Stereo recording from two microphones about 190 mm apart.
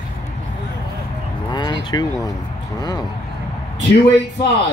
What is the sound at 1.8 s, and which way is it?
Speech, 20° left (ahead or behind).